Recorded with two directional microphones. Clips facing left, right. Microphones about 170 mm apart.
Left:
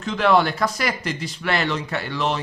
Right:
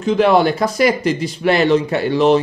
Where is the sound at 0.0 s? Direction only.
15° right (ahead or behind).